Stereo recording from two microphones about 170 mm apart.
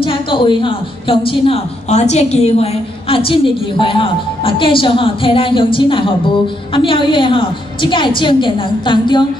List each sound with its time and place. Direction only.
0.0 s a woman's voice: 30° left (ahead or behind)